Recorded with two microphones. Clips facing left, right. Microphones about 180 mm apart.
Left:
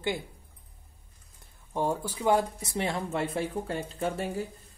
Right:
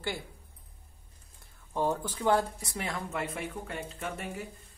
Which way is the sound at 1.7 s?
10° left (ahead or behind).